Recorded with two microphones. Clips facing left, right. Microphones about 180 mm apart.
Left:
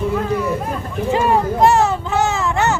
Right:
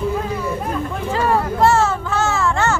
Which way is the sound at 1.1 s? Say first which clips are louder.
Left 3 dB; 20° left (ahead or behind).